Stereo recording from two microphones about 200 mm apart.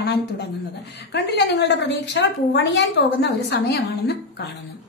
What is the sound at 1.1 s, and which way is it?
A woman's voice, 60° left (ahead or behind).